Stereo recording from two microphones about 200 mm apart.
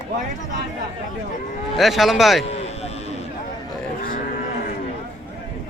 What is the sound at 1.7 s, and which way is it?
Speech, centre (ahead or behind).